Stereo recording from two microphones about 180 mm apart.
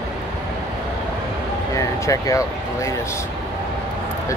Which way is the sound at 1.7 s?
15° left (ahead or behind).